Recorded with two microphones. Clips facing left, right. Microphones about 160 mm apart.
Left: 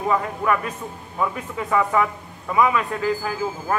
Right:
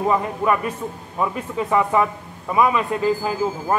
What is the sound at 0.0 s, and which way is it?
A man's voice, 15° right (ahead or behind).